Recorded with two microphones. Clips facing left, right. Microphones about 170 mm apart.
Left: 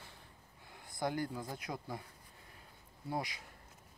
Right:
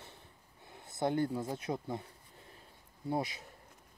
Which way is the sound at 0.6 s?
20° right (ahead or behind).